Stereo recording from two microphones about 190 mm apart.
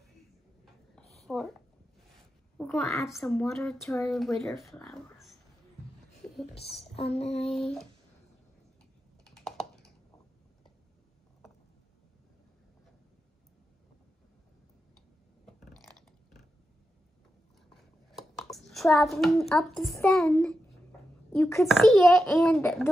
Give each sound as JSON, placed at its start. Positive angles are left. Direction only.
{"t": 1.2, "sound": "a sound", "side_deg": 0}
{"t": 2.5, "sound": "a sound", "side_deg": 5}
{"t": 3.1, "sound": "speech", "side_deg": 0}
{"t": 6.5, "sound": "speech", "side_deg": 30}
{"t": 7.4, "sound": "speech", "side_deg": 0}
{"t": 9.2, "sound": "computer keyboard", "side_deg": 0}
{"t": 15.4, "sound": "chewing", "side_deg": 0}
{"t": 18.1, "sound": "a sound", "side_deg": 0}
{"t": 19.5, "sound": "a woman's voice", "side_deg": 0}